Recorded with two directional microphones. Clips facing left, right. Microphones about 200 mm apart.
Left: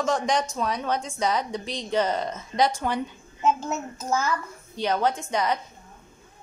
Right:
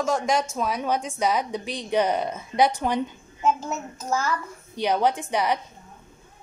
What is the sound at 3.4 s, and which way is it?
Child singing, centre (ahead or behind).